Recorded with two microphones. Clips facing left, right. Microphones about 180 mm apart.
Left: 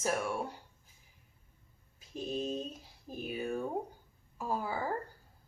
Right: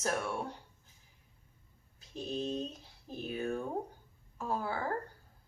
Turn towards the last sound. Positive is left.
turn(degrees=10)  # may be behind; listen again after turning